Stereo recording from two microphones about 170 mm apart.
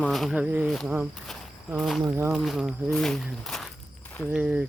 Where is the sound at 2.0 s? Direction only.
15° right (ahead or behind).